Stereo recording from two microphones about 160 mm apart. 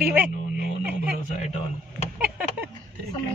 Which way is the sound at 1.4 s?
45° left (ahead or behind).